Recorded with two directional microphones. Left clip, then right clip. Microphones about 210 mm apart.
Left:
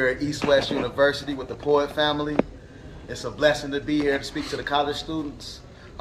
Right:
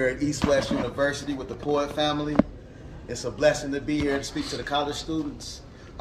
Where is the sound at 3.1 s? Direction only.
Centre (ahead or behind).